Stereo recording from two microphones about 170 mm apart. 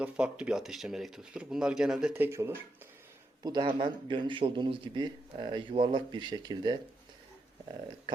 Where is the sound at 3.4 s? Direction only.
25° right (ahead or behind).